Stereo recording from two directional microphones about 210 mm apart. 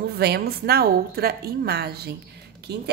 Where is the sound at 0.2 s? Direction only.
50° right (ahead or behind).